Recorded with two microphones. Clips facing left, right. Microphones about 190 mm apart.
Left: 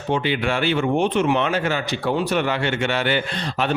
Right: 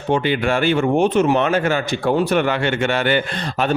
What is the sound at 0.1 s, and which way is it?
A man's voice, 45° right (ahead or behind).